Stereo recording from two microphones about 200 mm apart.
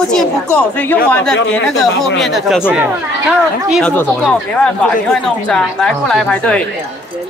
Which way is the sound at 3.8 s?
5° left (ahead or behind).